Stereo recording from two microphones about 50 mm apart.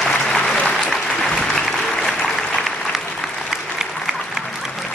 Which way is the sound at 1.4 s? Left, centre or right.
Centre.